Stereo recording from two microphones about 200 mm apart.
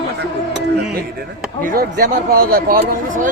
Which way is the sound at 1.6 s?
45° right (ahead or behind).